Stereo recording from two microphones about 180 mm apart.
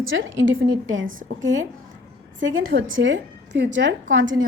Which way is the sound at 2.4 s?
60° right (ahead or behind).